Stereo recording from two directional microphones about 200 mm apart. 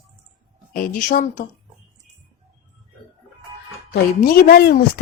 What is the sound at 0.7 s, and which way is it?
Speech, 45° left (ahead or behind).